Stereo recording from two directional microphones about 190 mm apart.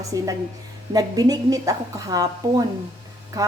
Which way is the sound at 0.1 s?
20° right (ahead or behind).